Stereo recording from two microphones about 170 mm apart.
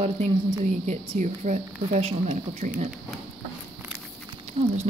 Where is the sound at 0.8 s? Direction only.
45° right (ahead or behind).